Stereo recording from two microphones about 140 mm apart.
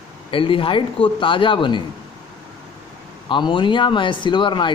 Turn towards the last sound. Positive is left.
turn(degrees=35)  # may be behind; listen again after turning